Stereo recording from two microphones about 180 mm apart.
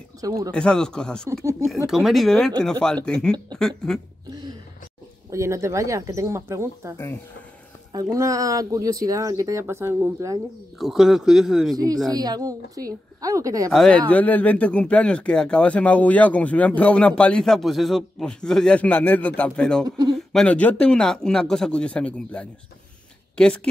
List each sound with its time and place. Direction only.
0.5 s a man's voice: 5° left (ahead or behind)
1.3 s speech: 15° right (ahead or behind)
1.9 s a man's voice: centre (ahead or behind)
5.3 s speech: 15° right (ahead or behind)
10.8 s a man's voice: centre (ahead or behind)
11.7 s speech: 20° right (ahead or behind)
13.7 s a man's voice: 5° left (ahead or behind)